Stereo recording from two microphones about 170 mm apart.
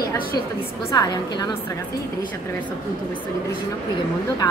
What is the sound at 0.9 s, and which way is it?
Speech, 20° left (ahead or behind).